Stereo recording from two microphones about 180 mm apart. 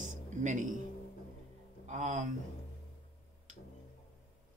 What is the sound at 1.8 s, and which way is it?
Speech, 40° right (ahead or behind).